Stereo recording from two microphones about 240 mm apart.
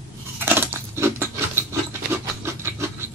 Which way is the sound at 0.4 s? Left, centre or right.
Centre.